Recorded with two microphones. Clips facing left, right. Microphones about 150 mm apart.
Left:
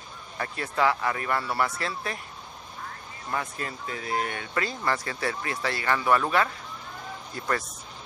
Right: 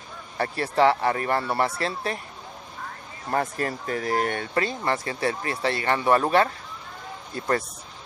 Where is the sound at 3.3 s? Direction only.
45° right (ahead or behind).